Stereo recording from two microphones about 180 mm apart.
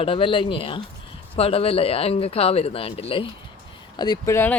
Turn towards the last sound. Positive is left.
turn(degrees=15)  # may be behind; listen again after turning